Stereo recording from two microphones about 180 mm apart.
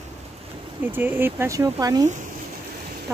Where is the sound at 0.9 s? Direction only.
10° right (ahead or behind).